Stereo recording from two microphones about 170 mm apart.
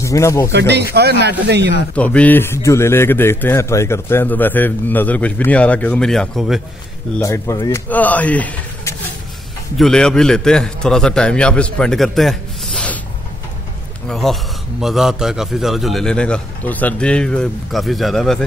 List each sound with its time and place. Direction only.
0.0 s speech: 20° left (ahead or behind)
0.5 s speech: 90° right
2.0 s a man's voice: 10° left (ahead or behind)
7.2 s a man's voice: 15° left (ahead or behind)
7.9 s a man's voice: 10° left (ahead or behind)
14.0 s a man's voice: 5° left (ahead or behind)